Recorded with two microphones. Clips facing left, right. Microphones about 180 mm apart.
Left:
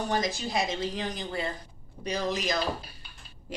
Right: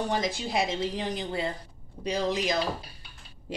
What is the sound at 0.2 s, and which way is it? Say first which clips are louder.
Speech: right 1 dB; 30° right (ahead or behind).